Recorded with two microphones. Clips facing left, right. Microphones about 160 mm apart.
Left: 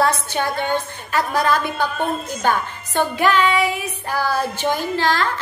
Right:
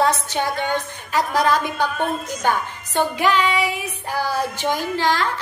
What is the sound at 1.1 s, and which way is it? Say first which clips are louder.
Speech: even; 15° right (ahead or behind).